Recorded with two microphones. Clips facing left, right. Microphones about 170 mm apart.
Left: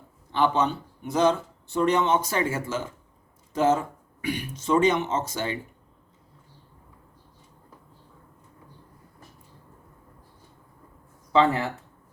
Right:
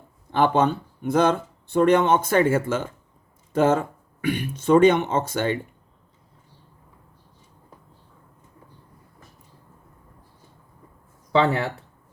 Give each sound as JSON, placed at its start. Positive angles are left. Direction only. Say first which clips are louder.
{"t": 0.3, "sound": "speech", "louder": "right 4 dB", "side_deg": -50}
{"t": 11.3, "sound": "speech", "louder": "right 1 dB", "side_deg": -65}